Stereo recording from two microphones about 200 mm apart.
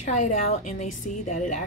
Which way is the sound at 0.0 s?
35° left (ahead or behind).